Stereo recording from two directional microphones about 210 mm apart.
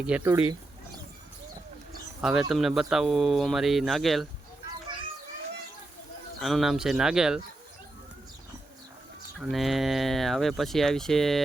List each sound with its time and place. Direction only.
0.0 s speech: 5° right (ahead or behind)
2.2 s speech: centre (ahead or behind)
6.4 s speech: centre (ahead or behind)
9.4 s speech: centre (ahead or behind)